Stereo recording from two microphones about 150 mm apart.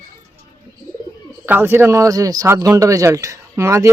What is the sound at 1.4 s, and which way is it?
Speech, 15° right (ahead or behind).